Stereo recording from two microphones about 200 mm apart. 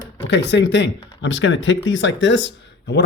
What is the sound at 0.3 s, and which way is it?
Speech, 60° left (ahead or behind).